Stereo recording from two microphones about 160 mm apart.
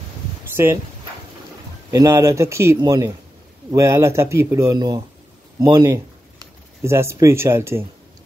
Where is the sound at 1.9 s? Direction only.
20° right (ahead or behind).